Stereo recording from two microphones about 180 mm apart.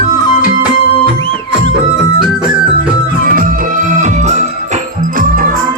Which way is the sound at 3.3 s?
50° right (ahead or behind).